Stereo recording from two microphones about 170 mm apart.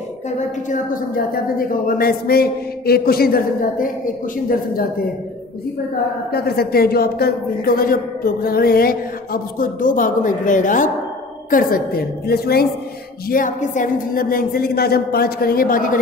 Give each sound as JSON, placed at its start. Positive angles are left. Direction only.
{"t": 0.7, "sound": "a woman's voice", "side_deg": 60}
{"t": 6.3, "sound": "a woman's voice", "side_deg": 65}
{"t": 11.5, "sound": "a woman's voice", "side_deg": 60}
{"t": 13.3, "sound": "a woman's voice", "side_deg": 50}